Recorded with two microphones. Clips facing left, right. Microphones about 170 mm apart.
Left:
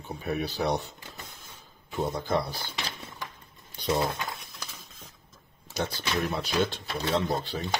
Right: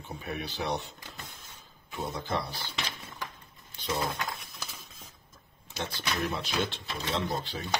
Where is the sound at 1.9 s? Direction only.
40° left (ahead or behind).